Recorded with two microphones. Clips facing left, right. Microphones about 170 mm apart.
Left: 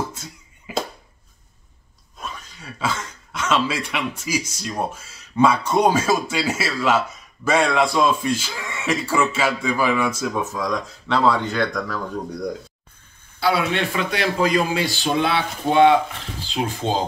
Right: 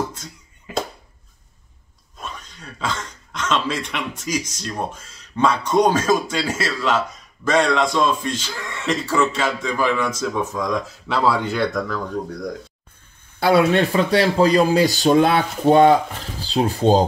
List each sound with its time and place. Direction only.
0.1 s a sound: 5° left (ahead or behind)
2.1 s speech: centre (ahead or behind)
13.4 s speech: 45° right (ahead or behind)